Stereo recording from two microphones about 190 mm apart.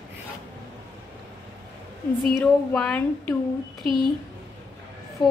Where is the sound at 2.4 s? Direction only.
5° left (ahead or behind).